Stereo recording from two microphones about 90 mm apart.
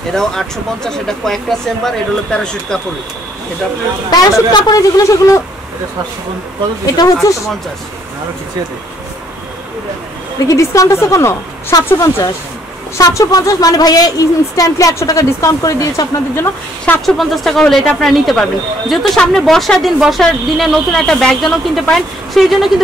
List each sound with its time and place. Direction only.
0.1 s speech: 5° left (ahead or behind)
4.1 s a man's voice: 50° left (ahead or behind)
7.2 s speech: 35° left (ahead or behind)
10.5 s speech: 35° left (ahead or behind)
16.3 s speech: 25° left (ahead or behind)
17.0 s speech: centre (ahead or behind)